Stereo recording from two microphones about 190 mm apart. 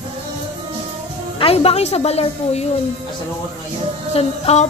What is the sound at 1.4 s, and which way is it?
A woman's voice, 30° left (ahead or behind).